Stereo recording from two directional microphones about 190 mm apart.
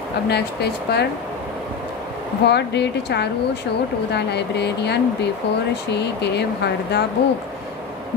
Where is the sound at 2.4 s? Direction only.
60° left (ahead or behind).